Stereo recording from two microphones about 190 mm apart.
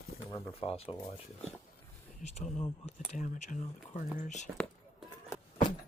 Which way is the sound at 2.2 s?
35° left (ahead or behind).